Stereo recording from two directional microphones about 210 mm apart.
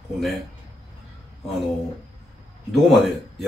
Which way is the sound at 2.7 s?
Centre (ahead or behind).